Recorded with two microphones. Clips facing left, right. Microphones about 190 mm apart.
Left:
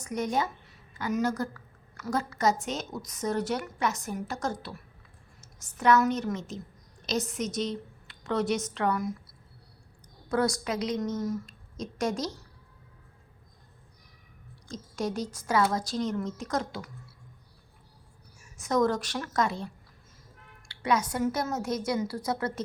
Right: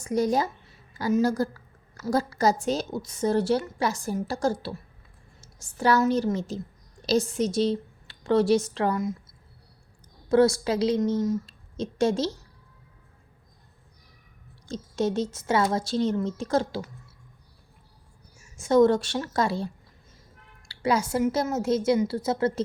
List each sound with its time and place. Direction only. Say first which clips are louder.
0.0 s a woman's voice: right 5 dB; 35° right (ahead or behind)
10.2 s a woman's voice: right 7 dB; 25° right (ahead or behind)
14.7 s a woman's voice: right 6 dB; 25° right (ahead or behind)
18.3 s a woman's voice: right 7 dB; 25° right (ahead or behind)